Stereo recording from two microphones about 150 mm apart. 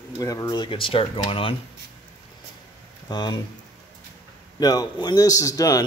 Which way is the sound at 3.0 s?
30° left (ahead or behind).